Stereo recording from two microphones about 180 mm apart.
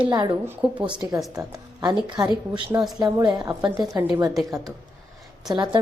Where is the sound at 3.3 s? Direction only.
25° right (ahead or behind).